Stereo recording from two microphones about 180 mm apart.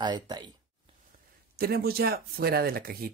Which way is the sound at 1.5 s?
60° right (ahead or behind).